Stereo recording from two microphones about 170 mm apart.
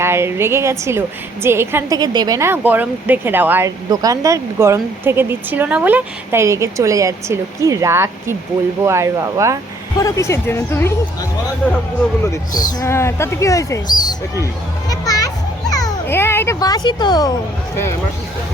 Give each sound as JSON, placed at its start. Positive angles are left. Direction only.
{"t": 0.0, "sound": "speech", "side_deg": -15}
{"t": 10.0, "sound": "speech", "side_deg": 20}
{"t": 12.2, "sound": "speech", "side_deg": 15}
{"t": 14.8, "sound": "children playing", "side_deg": 20}
{"t": 15.7, "sound": "a child's voice", "side_deg": 20}